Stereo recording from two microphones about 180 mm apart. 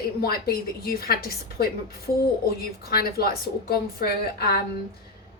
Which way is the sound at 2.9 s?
60° left (ahead or behind).